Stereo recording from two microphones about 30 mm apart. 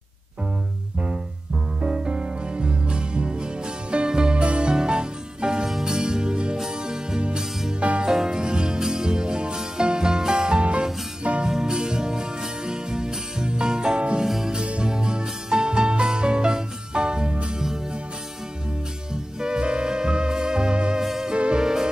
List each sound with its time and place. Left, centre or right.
1.9 s music: right
10.6 s music: right
11.4 s music: right
14.2 s music: centre
14.6 s music: right
19.4 s music: right
21.0 s music: centre
21.3 s music: right